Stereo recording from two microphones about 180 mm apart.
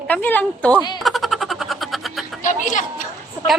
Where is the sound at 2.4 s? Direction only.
45° left (ahead or behind).